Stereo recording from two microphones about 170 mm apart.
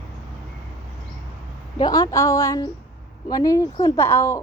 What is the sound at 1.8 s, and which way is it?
A woman's voice, 20° left (ahead or behind).